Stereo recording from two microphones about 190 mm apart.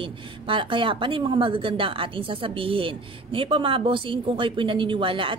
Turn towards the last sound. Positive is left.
turn(degrees=-25)  # may be behind; listen again after turning